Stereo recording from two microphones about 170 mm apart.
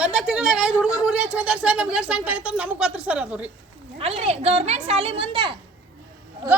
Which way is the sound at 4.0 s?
35° right (ahead or behind).